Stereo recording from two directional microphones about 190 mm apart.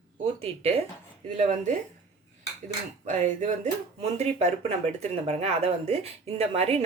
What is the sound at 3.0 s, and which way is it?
Speech, 40° right (ahead or behind).